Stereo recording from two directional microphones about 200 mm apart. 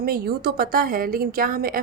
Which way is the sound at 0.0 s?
50° right (ahead or behind).